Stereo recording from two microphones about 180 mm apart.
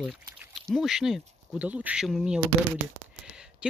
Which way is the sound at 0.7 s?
Centre (ahead or behind).